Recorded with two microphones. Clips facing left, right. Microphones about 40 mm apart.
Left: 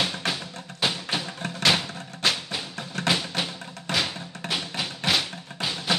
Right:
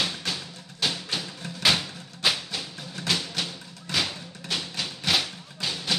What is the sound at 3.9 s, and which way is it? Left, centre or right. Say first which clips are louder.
Music: left 2 dB; left.